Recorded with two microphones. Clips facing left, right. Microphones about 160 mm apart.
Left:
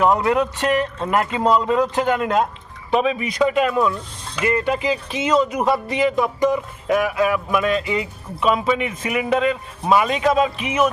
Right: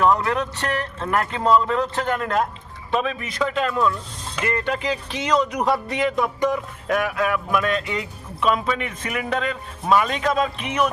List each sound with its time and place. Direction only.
0.0 s speech: 15° left (ahead or behind)